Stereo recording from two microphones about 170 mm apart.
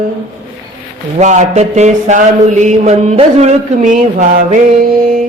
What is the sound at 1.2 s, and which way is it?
A man's voice, 45° right (ahead or behind).